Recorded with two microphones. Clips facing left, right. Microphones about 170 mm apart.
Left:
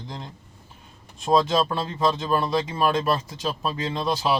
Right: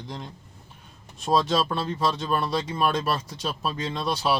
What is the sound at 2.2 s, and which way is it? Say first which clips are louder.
Speech: left 3 dB; 30° left (ahead or behind).